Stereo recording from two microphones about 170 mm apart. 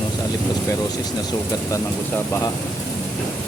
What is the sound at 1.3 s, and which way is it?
Speech, 15° left (ahead or behind).